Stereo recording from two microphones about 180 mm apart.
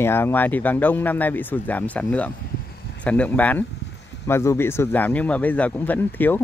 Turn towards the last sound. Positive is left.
turn(degrees=10)  # may be behind; listen again after turning